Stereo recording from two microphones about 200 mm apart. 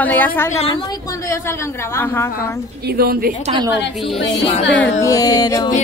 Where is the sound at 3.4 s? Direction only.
25° right (ahead or behind).